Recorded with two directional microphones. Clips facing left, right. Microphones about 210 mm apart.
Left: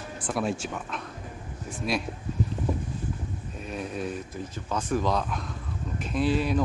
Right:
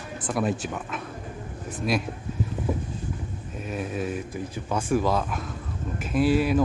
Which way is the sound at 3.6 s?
5° right (ahead or behind).